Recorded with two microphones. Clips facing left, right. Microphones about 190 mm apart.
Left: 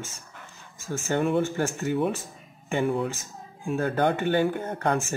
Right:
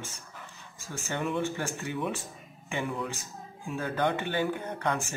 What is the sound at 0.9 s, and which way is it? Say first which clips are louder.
Speech: left 7 dB; 45° left (ahead or behind).